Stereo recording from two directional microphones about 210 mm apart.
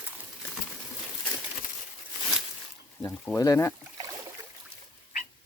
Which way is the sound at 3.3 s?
15° left (ahead or behind).